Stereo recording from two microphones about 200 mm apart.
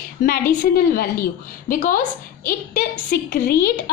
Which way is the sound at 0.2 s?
40° left (ahead or behind).